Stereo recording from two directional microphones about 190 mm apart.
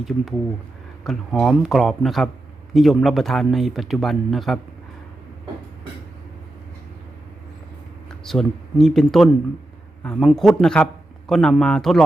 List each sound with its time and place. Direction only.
1.0 s speech: centre (ahead or behind)
8.2 s a man's voice: centre (ahead or behind)